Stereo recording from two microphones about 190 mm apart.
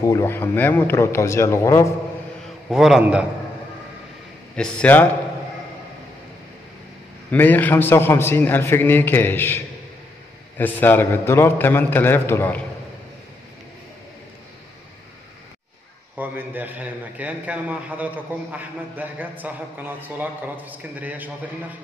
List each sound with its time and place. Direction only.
0.0 s a man's voice: 15° left (ahead or behind)
2.7 s a man's voice: centre (ahead or behind)
4.6 s a man's voice: 5° left (ahead or behind)
7.2 s a man's voice: 10° left (ahead or behind)
10.6 s a man's voice: 10° left (ahead or behind)
16.2 s a man's voice: 10° right (ahead or behind)